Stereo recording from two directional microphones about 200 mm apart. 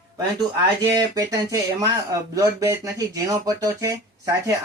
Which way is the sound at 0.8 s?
15° right (ahead or behind).